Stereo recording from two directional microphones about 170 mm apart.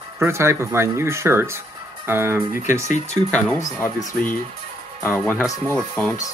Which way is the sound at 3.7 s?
15° left (ahead or behind).